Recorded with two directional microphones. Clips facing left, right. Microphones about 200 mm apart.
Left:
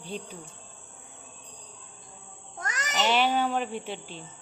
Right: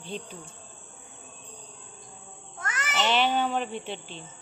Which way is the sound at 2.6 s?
40° left (ahead or behind).